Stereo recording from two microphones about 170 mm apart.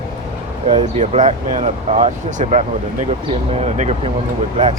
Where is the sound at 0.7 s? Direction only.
35° right (ahead or behind).